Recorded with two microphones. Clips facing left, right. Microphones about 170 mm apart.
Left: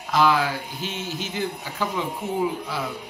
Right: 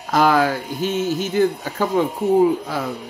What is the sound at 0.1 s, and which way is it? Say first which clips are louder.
Speech: right 4 dB; 50° right (ahead or behind).